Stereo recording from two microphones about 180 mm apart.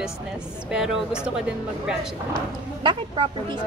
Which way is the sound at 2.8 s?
30° right (ahead or behind).